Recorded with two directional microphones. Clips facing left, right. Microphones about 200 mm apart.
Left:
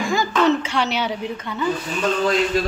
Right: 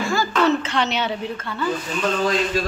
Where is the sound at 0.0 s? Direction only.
15° left (ahead or behind).